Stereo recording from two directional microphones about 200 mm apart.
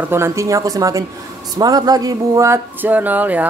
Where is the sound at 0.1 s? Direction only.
15° right (ahead or behind).